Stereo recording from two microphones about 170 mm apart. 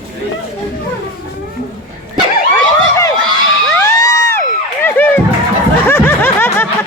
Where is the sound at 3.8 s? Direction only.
20° left (ahead or behind).